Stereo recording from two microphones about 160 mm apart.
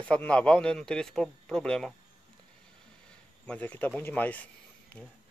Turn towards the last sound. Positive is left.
turn(degrees=10)  # may be behind; listen again after turning